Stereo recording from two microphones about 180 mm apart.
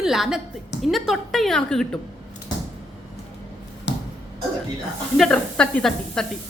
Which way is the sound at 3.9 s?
80° left.